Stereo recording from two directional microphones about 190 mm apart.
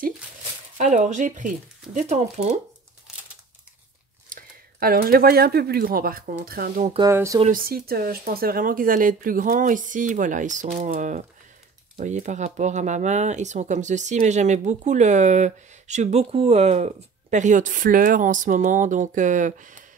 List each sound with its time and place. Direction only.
0.7 s speech: 40° right (ahead or behind)
4.3 s speech: 50° right (ahead or behind)
7.1 s speech: 15° right (ahead or behind)
7.5 s speech: 50° right (ahead or behind)